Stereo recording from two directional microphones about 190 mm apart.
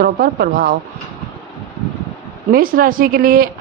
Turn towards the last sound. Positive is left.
turn(degrees=-50)  # may be behind; listen again after turning